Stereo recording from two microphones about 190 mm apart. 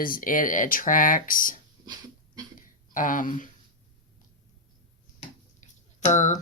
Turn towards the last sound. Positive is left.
turn(degrees=40)  # may be behind; listen again after turning